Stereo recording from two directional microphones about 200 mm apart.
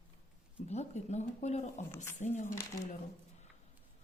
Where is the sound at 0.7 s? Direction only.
35° left (ahead or behind).